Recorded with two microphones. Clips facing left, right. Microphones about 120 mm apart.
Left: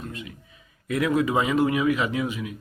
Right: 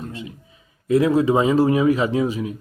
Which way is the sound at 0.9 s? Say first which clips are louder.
Right 7 dB; 30° right (ahead or behind).